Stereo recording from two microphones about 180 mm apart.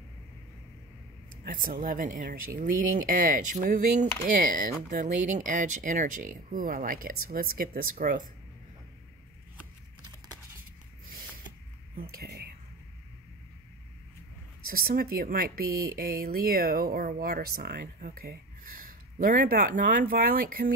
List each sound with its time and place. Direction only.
1.4 s speech: 50° right (ahead or behind)
11.9 s speech: 60° right (ahead or behind)
14.6 s speech: 55° right (ahead or behind)